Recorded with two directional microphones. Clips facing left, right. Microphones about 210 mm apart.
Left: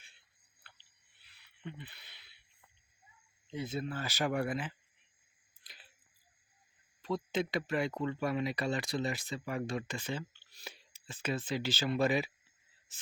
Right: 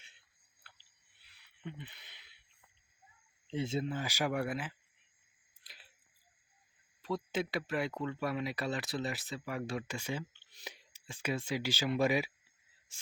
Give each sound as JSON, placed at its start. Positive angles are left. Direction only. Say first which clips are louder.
{"t": 0.7, "sound": "chewing", "louder": "left 1 dB", "side_deg": -5}
{"t": 1.6, "sound": "speech", "louder": "even", "side_deg": -20}
{"t": 3.4, "sound": "speech", "louder": "right 3 dB", "side_deg": -30}
{"t": 5.6, "sound": "a sound", "louder": "even", "side_deg": 0}
{"t": 7.0, "sound": "speech", "louder": "left 1 dB", "side_deg": -5}